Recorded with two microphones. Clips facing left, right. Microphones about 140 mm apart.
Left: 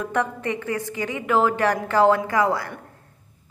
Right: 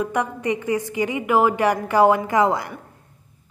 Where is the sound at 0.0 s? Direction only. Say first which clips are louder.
Right 1 dB; 15° right (ahead or behind).